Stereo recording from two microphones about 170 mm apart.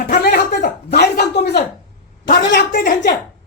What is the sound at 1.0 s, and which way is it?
Speech, 70° left (ahead or behind).